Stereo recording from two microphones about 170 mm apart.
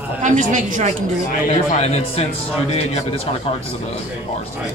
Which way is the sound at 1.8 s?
40° left (ahead or behind).